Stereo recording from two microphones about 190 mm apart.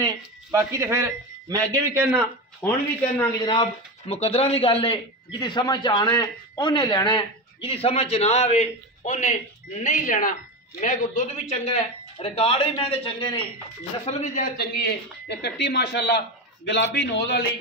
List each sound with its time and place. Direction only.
0.0 s speech: 15° right (ahead or behind)
3.3 s a man's voice: 25° left (ahead or behind)
14.0 s speech: 40° left (ahead or behind); by 17.4 s 65° left (ahead or behind)